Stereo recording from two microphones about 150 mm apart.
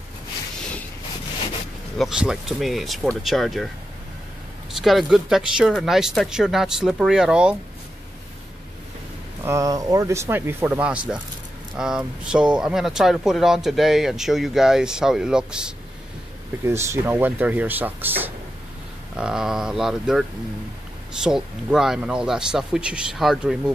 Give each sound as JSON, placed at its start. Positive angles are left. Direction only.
{"t": 2.0, "sound": "speech", "side_deg": -5}
{"t": 4.7, "sound": "speech", "side_deg": 0}
{"t": 9.4, "sound": "speech", "side_deg": -20}
{"t": 16.6, "sound": "speech", "side_deg": -15}